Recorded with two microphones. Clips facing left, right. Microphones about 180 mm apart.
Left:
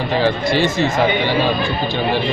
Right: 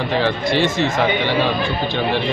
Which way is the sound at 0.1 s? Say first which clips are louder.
Left 3 dB; 5° left (ahead or behind).